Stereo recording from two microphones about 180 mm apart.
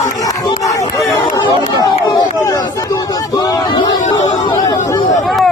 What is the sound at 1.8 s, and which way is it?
Run, 20° left (ahead or behind).